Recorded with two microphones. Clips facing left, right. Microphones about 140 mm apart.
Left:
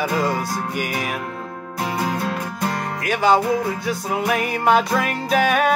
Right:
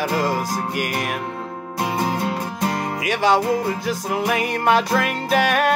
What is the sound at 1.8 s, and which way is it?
Music, 25° right (ahead or behind).